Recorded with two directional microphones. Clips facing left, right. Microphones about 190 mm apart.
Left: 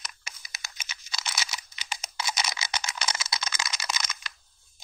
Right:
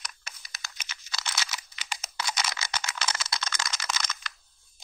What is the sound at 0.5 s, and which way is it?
Computer keyboard, 15° left (ahead or behind).